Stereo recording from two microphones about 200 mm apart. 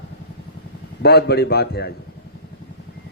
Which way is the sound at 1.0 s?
55° left (ahead or behind).